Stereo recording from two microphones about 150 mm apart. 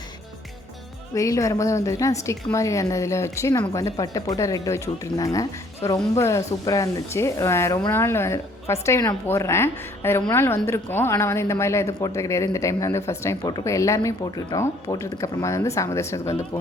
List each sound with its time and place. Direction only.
1.1 s a woman's voice: 20° left (ahead or behind)